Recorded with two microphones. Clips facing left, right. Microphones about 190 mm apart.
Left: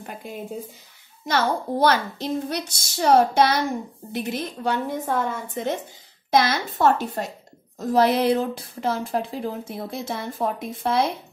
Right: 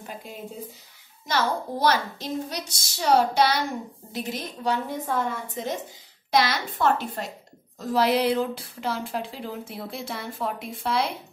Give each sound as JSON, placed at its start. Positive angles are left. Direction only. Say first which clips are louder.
{"t": 1.2, "sound": "a child's voice", "louder": "left 3 dB", "side_deg": 60}